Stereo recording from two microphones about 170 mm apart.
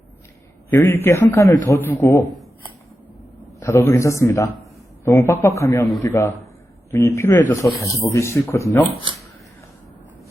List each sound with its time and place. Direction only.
0.7 s a man's voice: 10° left (ahead or behind)
3.6 s a man's voice: 20° left (ahead or behind)